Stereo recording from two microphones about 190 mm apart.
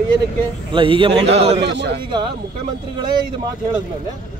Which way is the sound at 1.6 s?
65° right (ahead or behind).